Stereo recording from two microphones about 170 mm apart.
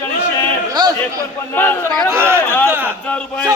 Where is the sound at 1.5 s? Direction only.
10° left (ahead or behind).